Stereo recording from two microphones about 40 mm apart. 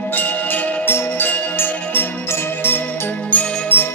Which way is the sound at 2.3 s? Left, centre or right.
Left.